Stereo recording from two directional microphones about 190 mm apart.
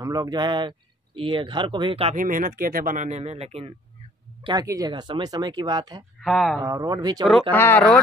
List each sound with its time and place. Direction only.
0.0 s speech: 20° right (ahead or behind)
2.1 s speech: 45° right (ahead or behind)
4.4 s speech: 20° right (ahead or behind)
6.2 s speech: centre (ahead or behind)
6.6 s speech: 20° right (ahead or behind)
7.5 s speech: 10° left (ahead or behind)